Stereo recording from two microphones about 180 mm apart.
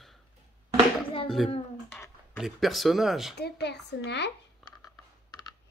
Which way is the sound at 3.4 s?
65° left (ahead or behind).